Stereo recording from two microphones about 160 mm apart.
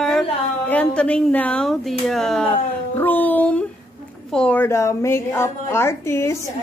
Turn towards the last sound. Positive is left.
turn(degrees=15)  # may be behind; listen again after turning